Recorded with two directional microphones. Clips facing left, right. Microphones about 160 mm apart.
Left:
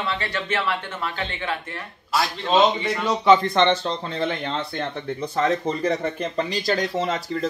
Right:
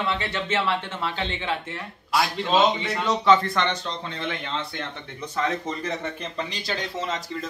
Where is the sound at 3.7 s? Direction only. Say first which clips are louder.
Left 6 dB; 35° left (ahead or behind).